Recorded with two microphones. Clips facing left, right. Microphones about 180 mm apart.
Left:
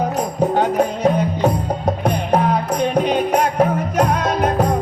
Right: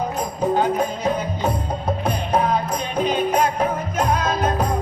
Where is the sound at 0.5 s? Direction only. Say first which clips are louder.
Left 2 dB; 70° left (ahead or behind).